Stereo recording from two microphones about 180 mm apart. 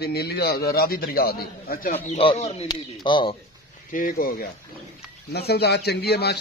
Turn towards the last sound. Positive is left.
turn(degrees=65)  # may be behind; listen again after turning